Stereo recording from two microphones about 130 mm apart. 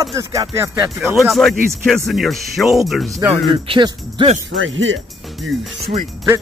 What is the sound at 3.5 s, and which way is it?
Speech, 40° right (ahead or behind).